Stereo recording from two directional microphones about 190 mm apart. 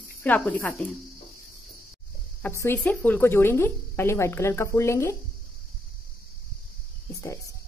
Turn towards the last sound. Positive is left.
turn(degrees=15)  # may be behind; listen again after turning